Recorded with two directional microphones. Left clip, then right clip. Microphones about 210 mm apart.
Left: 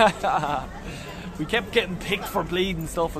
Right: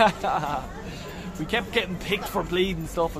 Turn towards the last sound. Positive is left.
turn(degrees=20)  # may be behind; listen again after turning